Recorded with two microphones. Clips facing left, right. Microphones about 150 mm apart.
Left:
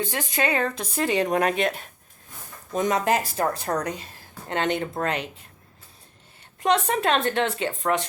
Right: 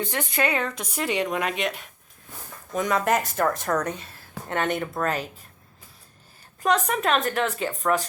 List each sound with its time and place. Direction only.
0.3 s speech: 30° left (ahead or behind)
2.7 s a woman's voice: 25° left (ahead or behind)
6.6 s a woman's voice: 25° left (ahead or behind)